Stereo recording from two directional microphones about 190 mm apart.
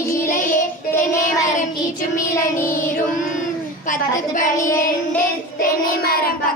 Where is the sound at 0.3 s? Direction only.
45° left (ahead or behind).